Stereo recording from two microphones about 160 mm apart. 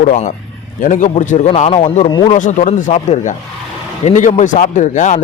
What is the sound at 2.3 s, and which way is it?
Speech, 50° left (ahead or behind).